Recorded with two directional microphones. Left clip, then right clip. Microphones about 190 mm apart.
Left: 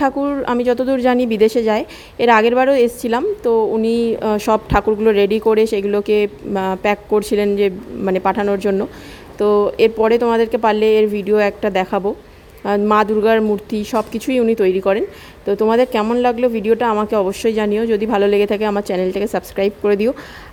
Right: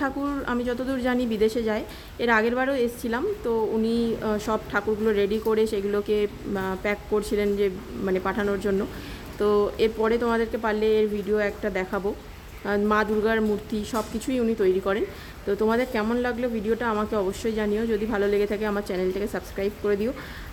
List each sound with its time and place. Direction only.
0.0 s speech: 30° left (ahead or behind)